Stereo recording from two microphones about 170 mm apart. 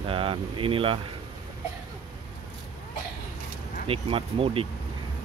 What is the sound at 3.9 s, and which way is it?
Speech, 35° right (ahead or behind).